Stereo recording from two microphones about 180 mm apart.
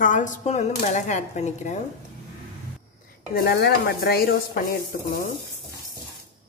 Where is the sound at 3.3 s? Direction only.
60° left (ahead or behind).